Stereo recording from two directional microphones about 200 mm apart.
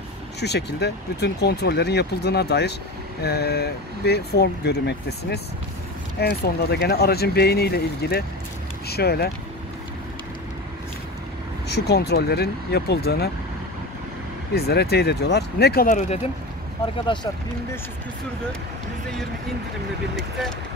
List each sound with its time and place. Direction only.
0.4 s speech: 55° left (ahead or behind)
11.7 s speech: 55° left (ahead or behind)
14.5 s speech: 55° left (ahead or behind); by 16.3 s 35° left (ahead or behind)
20.2 s speech: centre (ahead or behind)